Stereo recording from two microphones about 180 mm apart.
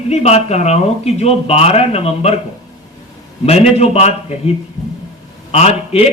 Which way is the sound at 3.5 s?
35° left (ahead or behind).